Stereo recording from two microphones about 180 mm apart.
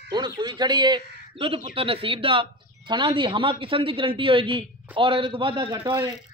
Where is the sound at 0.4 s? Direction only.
25° right (ahead or behind).